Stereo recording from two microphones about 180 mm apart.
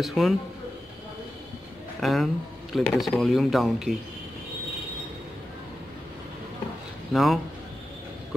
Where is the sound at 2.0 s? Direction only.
Centre (ahead or behind).